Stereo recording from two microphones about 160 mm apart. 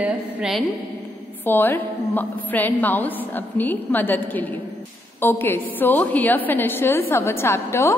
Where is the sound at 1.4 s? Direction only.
10° left (ahead or behind).